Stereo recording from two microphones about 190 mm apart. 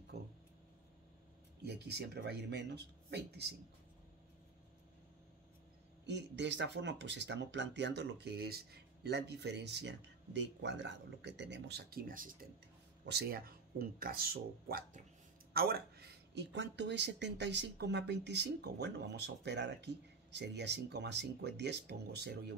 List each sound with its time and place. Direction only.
0.1 s a sound: 60° right (ahead or behind)
1.6 s speech: 60° right (ahead or behind)
6.0 s speech: 65° right (ahead or behind); by 12.4 s 45° right (ahead or behind)
13.0 s speech: 60° right (ahead or behind)